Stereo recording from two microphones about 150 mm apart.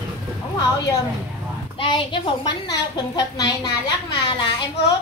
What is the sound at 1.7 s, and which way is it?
A woman's voice, 35° left (ahead or behind).